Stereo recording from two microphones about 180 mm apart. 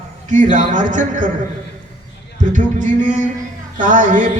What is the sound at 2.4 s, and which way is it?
A man's voice, 45° right (ahead or behind).